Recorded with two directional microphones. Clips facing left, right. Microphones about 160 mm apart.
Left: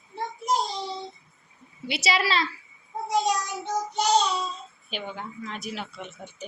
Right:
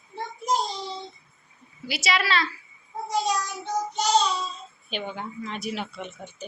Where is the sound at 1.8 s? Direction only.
30° left (ahead or behind).